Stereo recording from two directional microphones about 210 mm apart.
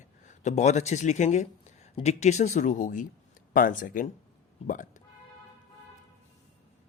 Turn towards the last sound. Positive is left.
turn(degrees=40)  # may be behind; listen again after turning